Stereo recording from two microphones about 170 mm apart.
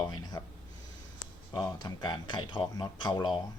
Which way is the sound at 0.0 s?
20° left (ahead or behind).